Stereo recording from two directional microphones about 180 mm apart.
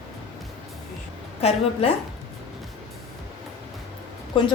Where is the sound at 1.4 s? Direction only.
35° left (ahead or behind).